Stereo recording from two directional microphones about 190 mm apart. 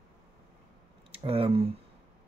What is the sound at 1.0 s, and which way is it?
Speech, 30° right (ahead or behind).